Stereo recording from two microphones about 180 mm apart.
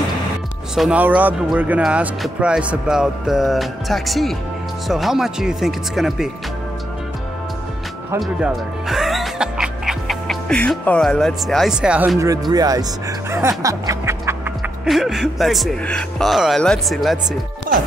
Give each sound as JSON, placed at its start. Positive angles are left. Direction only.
{"t": 0.7, "sound": "speech", "side_deg": -5}
{"t": 8.2, "sound": "speech", "side_deg": -5}
{"t": 12.2, "sound": "speech", "side_deg": -20}
{"t": 13.3, "sound": "music", "side_deg": -15}
{"t": 14.9, "sound": "speech", "side_deg": 0}